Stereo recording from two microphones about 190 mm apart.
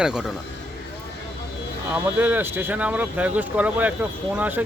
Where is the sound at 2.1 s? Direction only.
10° right (ahead or behind).